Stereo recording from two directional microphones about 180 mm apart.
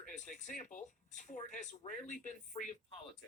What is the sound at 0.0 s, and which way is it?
Speech, 45° left (ahead or behind).